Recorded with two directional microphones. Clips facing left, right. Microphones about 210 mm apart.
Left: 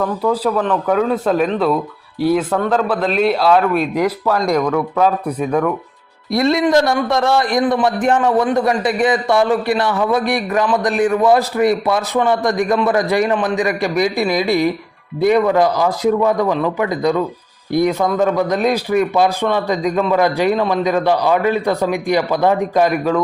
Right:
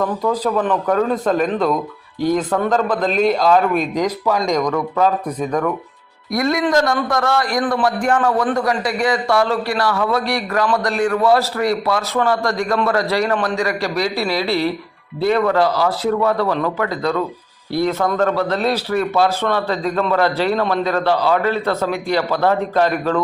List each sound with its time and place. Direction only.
0.0 s a man's voice: 5° left (ahead or behind)
6.3 s a man's voice: 25° left (ahead or behind); by 23.2 s 10° left (ahead or behind)